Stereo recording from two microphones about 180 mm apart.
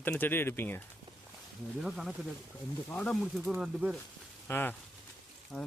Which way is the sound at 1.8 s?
Centre (ahead or behind).